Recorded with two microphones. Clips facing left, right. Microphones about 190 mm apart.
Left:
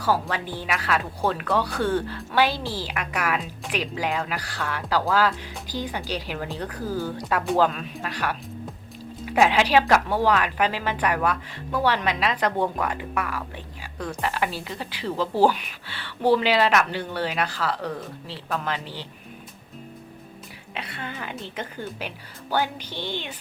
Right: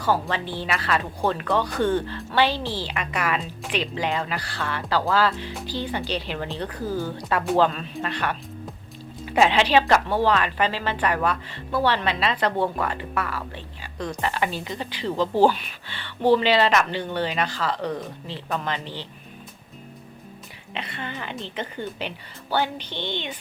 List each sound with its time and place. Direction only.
0.0 s speech: 5° left (ahead or behind)
20.7 s speech: 5° left (ahead or behind)